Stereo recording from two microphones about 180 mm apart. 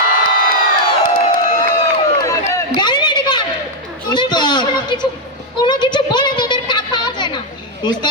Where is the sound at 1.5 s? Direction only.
20° left (ahead or behind).